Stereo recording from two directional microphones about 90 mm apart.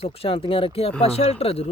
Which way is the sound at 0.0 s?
90° left.